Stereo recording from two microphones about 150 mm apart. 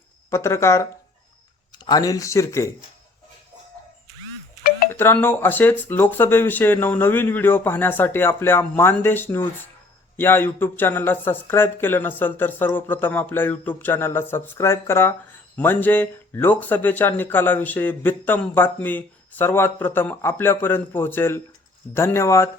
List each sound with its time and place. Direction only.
0.3 s speech: 20° left (ahead or behind)
4.9 s speech: 15° left (ahead or behind)